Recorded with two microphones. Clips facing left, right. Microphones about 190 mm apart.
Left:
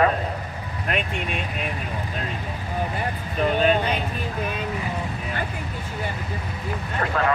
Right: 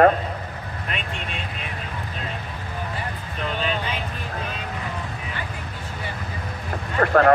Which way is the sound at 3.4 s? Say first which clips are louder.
Left 7 dB; 45° left (ahead or behind).